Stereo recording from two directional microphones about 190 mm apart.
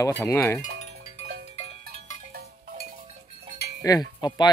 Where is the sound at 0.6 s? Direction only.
35° left (ahead or behind).